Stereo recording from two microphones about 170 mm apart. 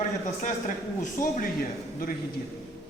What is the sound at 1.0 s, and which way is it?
Speech, 50° left (ahead or behind).